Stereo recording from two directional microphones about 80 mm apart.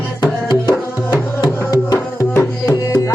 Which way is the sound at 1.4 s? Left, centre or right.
Left.